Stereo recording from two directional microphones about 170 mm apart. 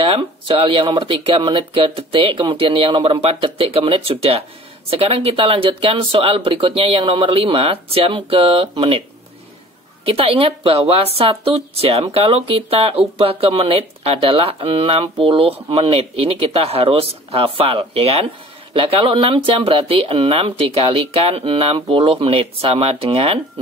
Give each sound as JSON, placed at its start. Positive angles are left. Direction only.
{"t": 0.0, "sound": "speech", "side_deg": -30}
{"t": 10.0, "sound": "speech", "side_deg": -35}